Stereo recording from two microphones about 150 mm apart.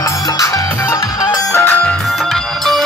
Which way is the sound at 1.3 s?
15° left (ahead or behind).